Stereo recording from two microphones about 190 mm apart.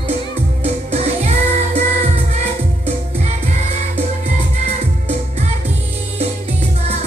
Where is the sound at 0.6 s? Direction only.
35° right (ahead or behind).